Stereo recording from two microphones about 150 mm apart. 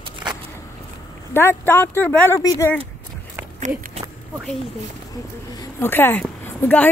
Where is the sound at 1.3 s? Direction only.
15° left (ahead or behind).